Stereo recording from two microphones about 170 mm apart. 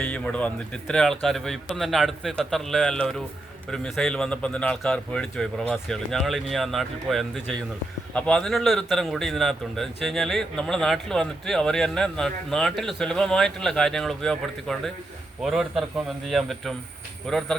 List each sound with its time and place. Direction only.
0.0 s speech: 5° left (ahead or behind)